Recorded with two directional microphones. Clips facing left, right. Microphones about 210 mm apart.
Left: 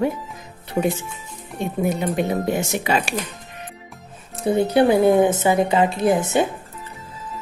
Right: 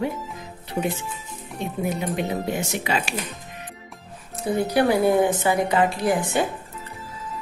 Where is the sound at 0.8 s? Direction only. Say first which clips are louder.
Left 5 dB; 70° left (ahead or behind).